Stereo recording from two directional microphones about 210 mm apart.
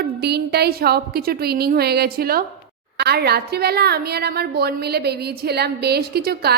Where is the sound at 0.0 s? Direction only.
50° right (ahead or behind).